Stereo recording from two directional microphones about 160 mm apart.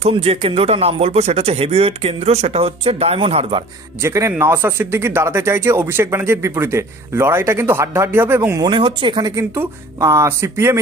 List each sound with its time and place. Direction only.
0.0 s a man's voice: 35° right (ahead or behind)
4.0 s speech: 15° right (ahead or behind)